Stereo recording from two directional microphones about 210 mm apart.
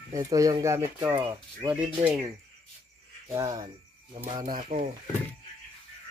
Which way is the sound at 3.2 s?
15° right (ahead or behind).